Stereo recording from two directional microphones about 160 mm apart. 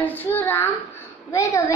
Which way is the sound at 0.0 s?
10° left (ahead or behind).